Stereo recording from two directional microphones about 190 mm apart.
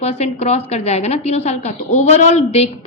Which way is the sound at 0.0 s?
35° left (ahead or behind).